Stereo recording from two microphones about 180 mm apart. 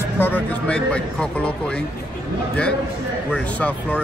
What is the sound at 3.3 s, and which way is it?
Speech, 5° left (ahead or behind).